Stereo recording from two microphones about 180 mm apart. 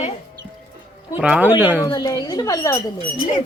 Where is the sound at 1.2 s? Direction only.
5° right (ahead or behind).